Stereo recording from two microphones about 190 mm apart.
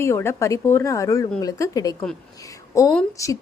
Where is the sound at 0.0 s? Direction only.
15° left (ahead or behind).